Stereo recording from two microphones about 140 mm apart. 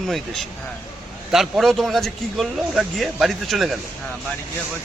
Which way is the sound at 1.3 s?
Centre (ahead or behind).